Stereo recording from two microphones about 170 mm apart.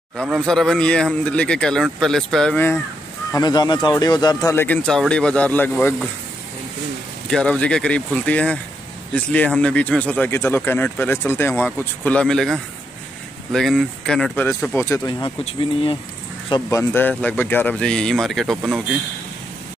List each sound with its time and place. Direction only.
0.2 s speech: centre (ahead or behind)
3.3 s speech: 25° left (ahead or behind)
7.2 s speech: 5° left (ahead or behind)
15.0 s speech: 25° left (ahead or behind)
16.7 s speech: 10° left (ahead or behind)